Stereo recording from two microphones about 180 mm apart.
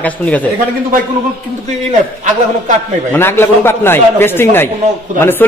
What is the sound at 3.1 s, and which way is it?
Speech, 10° left (ahead or behind).